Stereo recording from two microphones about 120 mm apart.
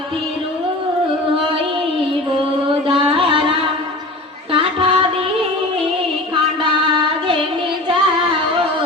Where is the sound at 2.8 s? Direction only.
50° right (ahead or behind).